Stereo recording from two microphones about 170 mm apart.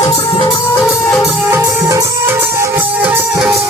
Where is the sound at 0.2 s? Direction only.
25° left (ahead or behind).